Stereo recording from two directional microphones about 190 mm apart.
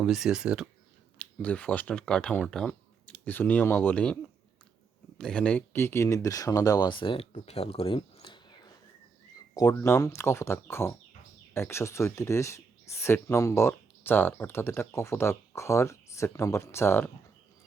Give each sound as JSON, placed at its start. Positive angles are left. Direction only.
{"t": 0.0, "sound": "speech", "side_deg": 0}
{"t": 1.2, "sound": "speech", "side_deg": 5}
{"t": 7.3, "sound": "a sound", "side_deg": 35}
{"t": 9.6, "sound": "speech", "side_deg": 15}